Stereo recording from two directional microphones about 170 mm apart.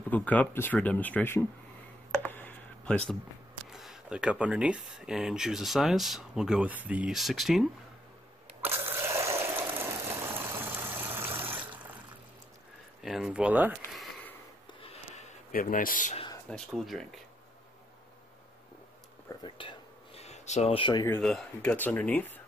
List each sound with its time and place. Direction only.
0.1 s speech: 10° left (ahead or behind)
2.2 s a sound: 10° left (ahead or behind)
3.7 s speech: centre (ahead or behind)
8.6 s ratchet: 15° right (ahead or behind)
13.0 s speech: centre (ahead or behind)
14.7 s a sound: 35° left (ahead or behind)
15.5 s speech: 55° left (ahead or behind)
16.4 s speech: centre (ahead or behind)
19.6 s speech: 30° left (ahead or behind)
20.2 s a sound: 40° left (ahead or behind)
21.2 s speech: 5° left (ahead or behind)